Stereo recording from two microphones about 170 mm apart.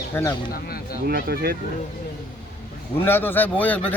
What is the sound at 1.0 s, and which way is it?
Speech, 65° right (ahead or behind).